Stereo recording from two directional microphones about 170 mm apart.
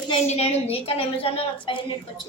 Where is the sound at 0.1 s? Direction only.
35° left (ahead or behind).